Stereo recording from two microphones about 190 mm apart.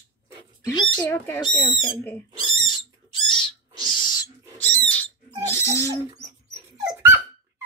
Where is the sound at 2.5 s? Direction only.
25° left (ahead or behind).